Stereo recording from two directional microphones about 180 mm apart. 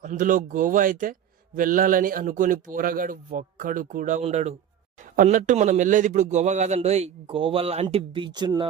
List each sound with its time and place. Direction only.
0.0 s a man's voice: 50° right (ahead or behind); by 8.6 s 25° right (ahead or behind)